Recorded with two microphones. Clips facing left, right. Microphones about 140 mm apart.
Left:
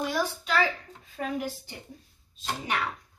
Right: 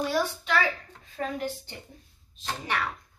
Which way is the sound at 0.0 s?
10° left (ahead or behind).